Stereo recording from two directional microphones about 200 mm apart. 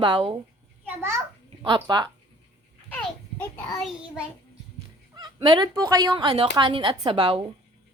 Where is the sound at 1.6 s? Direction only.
25° right (ahead or behind).